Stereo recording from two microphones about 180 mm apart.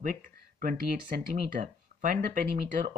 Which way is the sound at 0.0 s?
50° right (ahead or behind).